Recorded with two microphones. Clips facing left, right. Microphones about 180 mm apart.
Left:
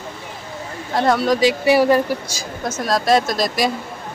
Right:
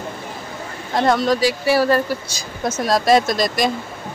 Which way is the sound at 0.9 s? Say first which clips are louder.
Even; 5° left (ahead or behind).